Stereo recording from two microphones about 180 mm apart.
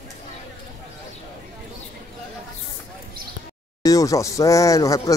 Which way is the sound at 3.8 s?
20° left (ahead or behind).